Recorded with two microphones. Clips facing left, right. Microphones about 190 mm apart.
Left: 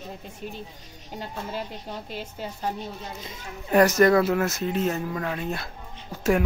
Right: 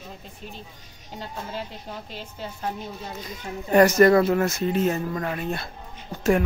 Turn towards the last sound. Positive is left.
turn(degrees=5)  # may be behind; listen again after turning